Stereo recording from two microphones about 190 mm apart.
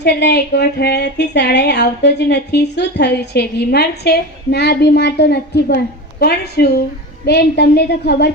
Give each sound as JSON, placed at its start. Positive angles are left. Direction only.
{"t": 0.0, "sound": "speech", "side_deg": 60}